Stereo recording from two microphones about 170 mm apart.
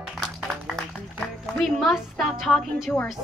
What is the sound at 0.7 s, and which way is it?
A woman's voice, 5° left (ahead or behind).